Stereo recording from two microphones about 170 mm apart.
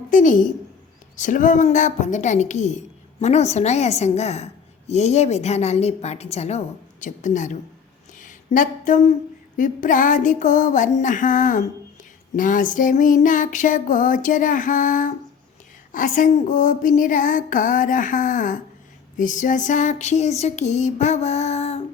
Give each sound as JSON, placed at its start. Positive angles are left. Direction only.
{"t": 0.1, "sound": "a woman's voice", "side_deg": 50}
{"t": 8.2, "sound": "a sound", "side_deg": 50}
{"t": 9.6, "sound": "a woman's voice", "side_deg": 50}